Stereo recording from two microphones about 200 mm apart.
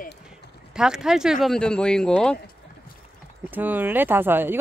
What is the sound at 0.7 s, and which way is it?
Speech, 5° right (ahead or behind).